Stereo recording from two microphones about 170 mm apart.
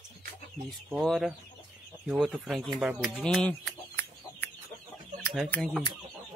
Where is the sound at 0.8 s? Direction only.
Centre (ahead or behind).